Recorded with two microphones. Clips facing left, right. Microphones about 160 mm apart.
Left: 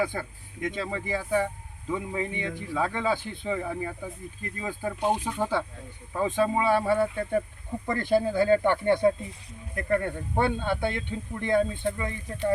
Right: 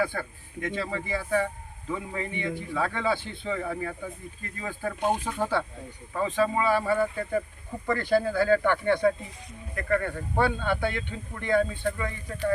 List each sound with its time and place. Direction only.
0.0 s speech: 15° left (ahead or behind)